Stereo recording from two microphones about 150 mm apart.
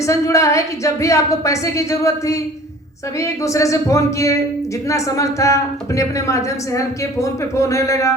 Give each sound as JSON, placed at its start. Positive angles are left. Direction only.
{"t": 0.0, "sound": "a woman's voice", "side_deg": 20}